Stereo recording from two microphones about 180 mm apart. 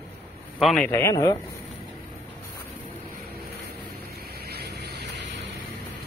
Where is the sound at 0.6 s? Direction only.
5° left (ahead or behind).